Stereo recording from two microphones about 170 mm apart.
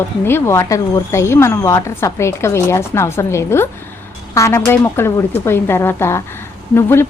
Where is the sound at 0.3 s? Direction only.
15° left (ahead or behind).